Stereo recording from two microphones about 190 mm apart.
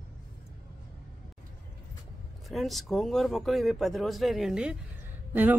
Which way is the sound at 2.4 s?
Centre (ahead or behind).